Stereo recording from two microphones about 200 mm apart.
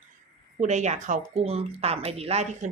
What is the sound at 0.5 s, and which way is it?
Speech, 35° right (ahead or behind).